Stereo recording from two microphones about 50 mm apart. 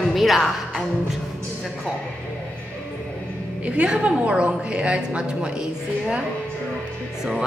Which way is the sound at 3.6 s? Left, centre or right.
Right.